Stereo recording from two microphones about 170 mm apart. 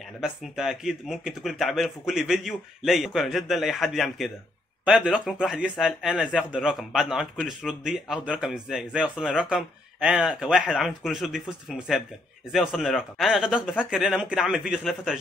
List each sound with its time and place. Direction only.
0.2 s a man's voice: 5° right (ahead or behind)